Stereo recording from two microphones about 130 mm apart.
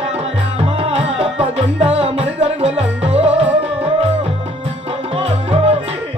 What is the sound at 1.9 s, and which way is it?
Music, 45° right (ahead or behind).